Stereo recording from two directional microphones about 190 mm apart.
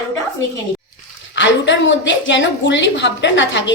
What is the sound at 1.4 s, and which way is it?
A woman's voice, 70° left (ahead or behind).